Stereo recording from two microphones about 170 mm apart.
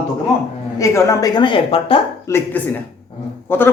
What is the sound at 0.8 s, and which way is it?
Speech, 20° left (ahead or behind).